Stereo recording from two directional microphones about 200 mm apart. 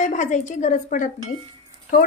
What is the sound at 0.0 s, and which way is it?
A woman's voice, 40° left (ahead or behind).